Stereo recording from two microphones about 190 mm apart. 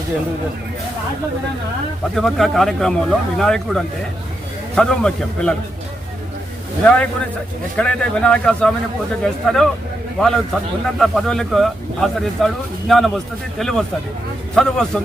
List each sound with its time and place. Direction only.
2.1 s speech: centre (ahead or behind)
6.8 s speech: 5° left (ahead or behind)